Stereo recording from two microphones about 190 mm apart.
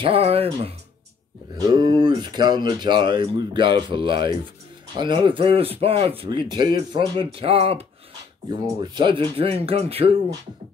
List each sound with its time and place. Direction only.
0.0 s speech: 30° right (ahead or behind)